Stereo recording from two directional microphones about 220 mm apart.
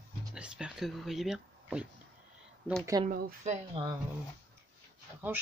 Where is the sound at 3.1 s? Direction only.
30° right (ahead or behind).